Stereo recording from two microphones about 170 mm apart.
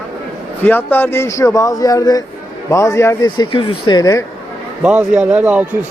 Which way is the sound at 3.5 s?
30° left (ahead or behind).